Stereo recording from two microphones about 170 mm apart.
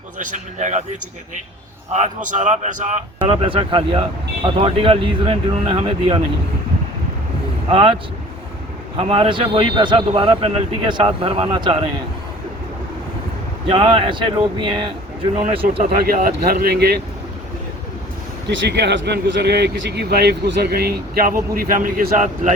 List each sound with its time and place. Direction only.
0.2 s a man's voice: 50° right (ahead or behind)
1.9 s a man's voice: 45° right (ahead or behind)
3.2 s a man's voice: 30° right (ahead or behind)
7.7 s a man's voice: 30° right (ahead or behind)
9.0 s a man's voice: 35° right (ahead or behind)
13.7 s a man's voice: 30° right (ahead or behind)
15.8 s speech: 55° right (ahead or behind); by 17.0 s 70° right (ahead or behind)
18.4 s speech: 80° right; by 22.5 s 50° right (ahead or behind)